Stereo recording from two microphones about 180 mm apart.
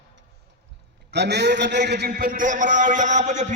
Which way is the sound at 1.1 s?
70° right (ahead or behind).